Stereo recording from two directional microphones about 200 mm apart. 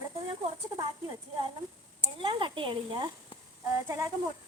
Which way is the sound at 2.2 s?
25° right (ahead or behind).